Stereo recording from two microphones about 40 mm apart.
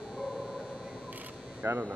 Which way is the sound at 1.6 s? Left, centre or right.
Right.